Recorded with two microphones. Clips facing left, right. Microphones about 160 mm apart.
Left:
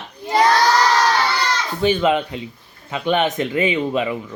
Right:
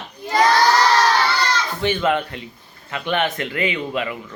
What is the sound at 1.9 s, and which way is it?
A man's voice, 15° left (ahead or behind).